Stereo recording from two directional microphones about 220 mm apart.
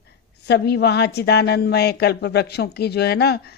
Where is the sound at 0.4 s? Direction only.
50° left (ahead or behind).